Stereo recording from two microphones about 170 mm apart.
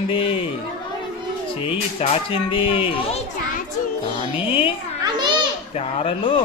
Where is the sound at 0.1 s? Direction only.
30° left (ahead or behind).